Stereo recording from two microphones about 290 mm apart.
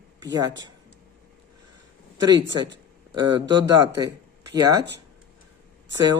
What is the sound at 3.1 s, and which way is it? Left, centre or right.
A man's voice, centre.